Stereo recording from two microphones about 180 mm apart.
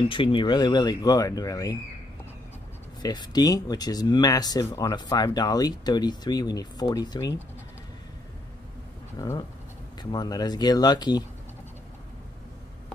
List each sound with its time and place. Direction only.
0.1 s speech: 30° left (ahead or behind)
3.0 s speech: 25° left (ahead or behind)
9.1 s speech: 20° left (ahead or behind)